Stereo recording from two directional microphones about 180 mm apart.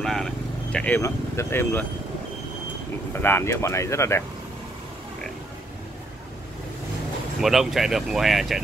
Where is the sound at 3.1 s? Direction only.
15° left (ahead or behind).